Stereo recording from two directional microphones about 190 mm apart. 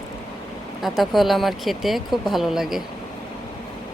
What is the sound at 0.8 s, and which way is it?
Speech, centre (ahead or behind).